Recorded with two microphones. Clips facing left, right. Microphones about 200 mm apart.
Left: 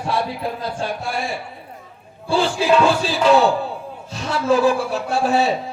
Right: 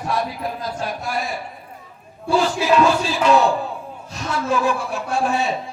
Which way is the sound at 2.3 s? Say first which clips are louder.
Even; 30° left (ahead or behind).